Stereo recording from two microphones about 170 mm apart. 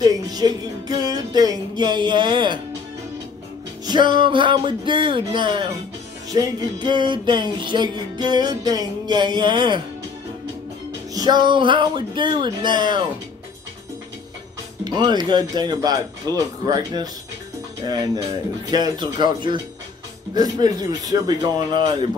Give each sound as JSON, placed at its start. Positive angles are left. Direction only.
{"t": 0.0, "sound": "music", "side_deg": -20}
{"t": 3.8, "sound": "music", "side_deg": -25}
{"t": 11.1, "sound": "music", "side_deg": -25}
{"t": 14.9, "sound": "music", "side_deg": -25}